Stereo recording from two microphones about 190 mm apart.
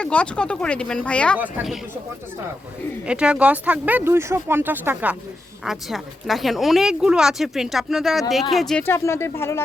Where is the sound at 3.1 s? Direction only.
5° right (ahead or behind).